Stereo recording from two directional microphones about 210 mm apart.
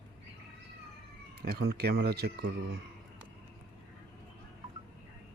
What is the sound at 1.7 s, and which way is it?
Speech, 45° right (ahead or behind).